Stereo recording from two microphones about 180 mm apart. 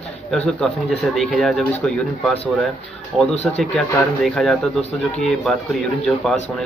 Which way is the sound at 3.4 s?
10° left (ahead or behind).